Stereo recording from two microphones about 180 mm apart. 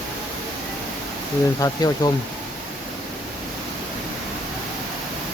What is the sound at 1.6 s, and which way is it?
Speech, 20° left (ahead or behind).